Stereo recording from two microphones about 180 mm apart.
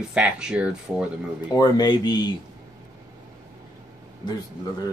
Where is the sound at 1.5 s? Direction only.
20° left (ahead or behind).